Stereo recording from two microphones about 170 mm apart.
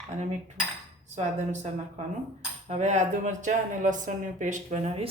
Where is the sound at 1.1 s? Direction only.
40° right (ahead or behind).